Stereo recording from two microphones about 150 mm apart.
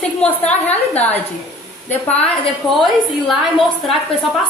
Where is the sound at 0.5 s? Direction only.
10° left (ahead or behind).